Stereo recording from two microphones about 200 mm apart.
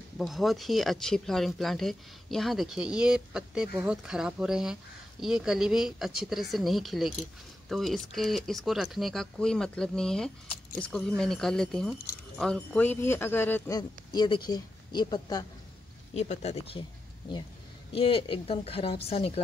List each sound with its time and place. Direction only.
0.2 s speech: centre (ahead or behind); by 15.4 s 20° left (ahead or behind)
16.1 s speech: 35° left (ahead or behind)
17.9 s speech: 25° left (ahead or behind)